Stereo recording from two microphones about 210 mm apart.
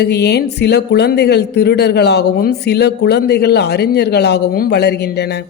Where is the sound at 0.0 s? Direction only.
50° left (ahead or behind).